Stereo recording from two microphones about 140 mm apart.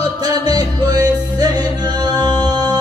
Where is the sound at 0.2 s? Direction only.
30° right (ahead or behind).